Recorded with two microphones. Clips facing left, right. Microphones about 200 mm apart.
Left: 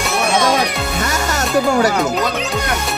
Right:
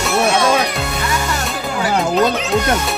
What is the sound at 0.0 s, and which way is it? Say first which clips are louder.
Music: right 1 dB; centre (ahead or behind).